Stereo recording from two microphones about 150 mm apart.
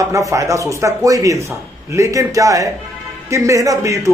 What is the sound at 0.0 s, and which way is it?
A man's voice, 20° right (ahead or behind).